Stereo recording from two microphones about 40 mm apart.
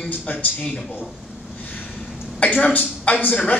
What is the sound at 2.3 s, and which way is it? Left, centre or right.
Speech, left.